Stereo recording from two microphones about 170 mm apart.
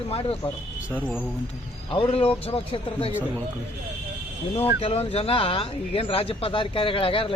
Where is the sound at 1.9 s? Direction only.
35° left (ahead or behind).